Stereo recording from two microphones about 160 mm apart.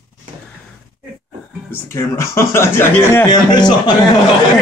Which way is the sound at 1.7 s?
15° left (ahead or behind).